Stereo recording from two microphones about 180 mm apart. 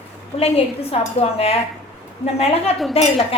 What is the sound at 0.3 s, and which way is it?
A woman's voice, 35° left (ahead or behind).